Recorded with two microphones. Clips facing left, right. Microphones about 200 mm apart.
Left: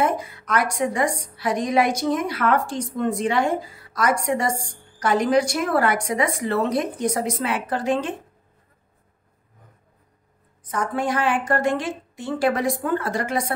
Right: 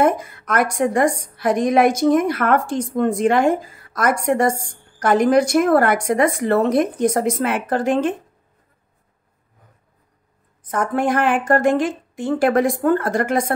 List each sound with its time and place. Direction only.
0.0 s a woman's voice: 50° right (ahead or behind)
10.7 s a woman's voice: 50° right (ahead or behind)